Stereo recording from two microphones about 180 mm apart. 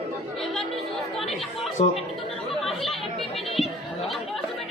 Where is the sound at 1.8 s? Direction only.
35° left (ahead or behind).